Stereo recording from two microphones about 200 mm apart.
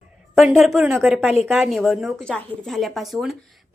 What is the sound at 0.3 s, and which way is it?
A woman's voice, centre (ahead or behind).